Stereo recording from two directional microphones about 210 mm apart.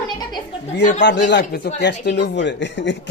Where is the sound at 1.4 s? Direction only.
35° left (ahead or behind).